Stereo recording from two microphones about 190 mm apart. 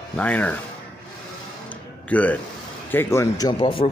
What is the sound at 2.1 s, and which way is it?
Speech, 10° left (ahead or behind).